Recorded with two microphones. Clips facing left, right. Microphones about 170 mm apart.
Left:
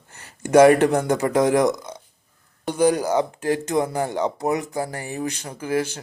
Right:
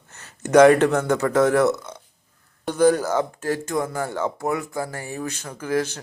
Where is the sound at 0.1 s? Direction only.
10° left (ahead or behind).